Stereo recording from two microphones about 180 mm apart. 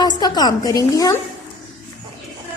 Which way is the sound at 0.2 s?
20° left (ahead or behind).